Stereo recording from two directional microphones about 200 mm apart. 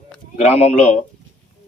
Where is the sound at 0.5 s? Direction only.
35° left (ahead or behind).